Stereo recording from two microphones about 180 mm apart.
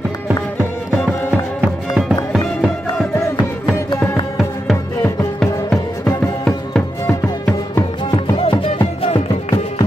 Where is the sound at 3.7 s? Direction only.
15° left (ahead or behind).